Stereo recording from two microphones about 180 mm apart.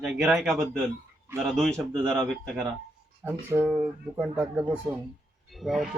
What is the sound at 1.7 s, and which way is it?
Speech, 20° right (ahead or behind).